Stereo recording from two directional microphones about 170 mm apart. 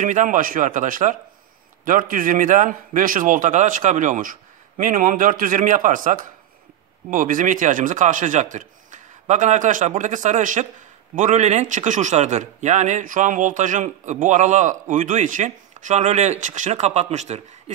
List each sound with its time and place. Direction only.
0.0 s a man's voice: 50° right (ahead or behind)